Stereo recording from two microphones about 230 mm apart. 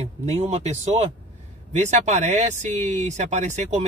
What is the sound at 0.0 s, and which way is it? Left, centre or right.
Speech, right.